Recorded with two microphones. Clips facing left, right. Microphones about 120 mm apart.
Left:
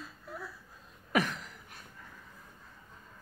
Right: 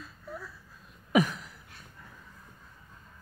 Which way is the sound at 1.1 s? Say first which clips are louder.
Right 5 dB; 10° right (ahead or behind).